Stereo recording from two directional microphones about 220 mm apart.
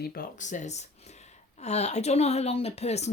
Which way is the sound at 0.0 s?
45° left (ahead or behind).